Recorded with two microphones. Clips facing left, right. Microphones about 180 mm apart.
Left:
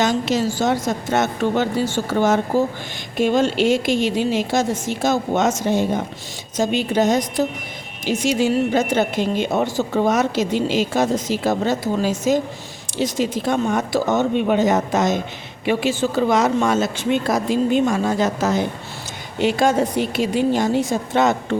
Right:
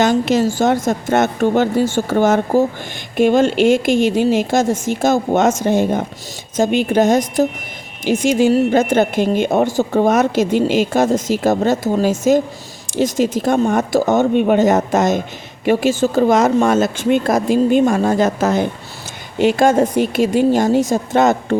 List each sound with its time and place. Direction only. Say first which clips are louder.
0.0 s speech: right 5 dB; 55° right (ahead or behind)